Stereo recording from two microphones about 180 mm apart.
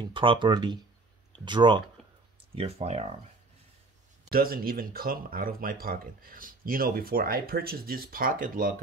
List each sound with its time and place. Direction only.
0.0 s speech: 25° right (ahead or behind)
4.3 s speech: 55° right (ahead or behind)